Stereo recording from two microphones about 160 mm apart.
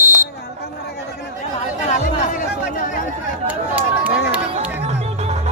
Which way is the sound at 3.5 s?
10° right (ahead or behind).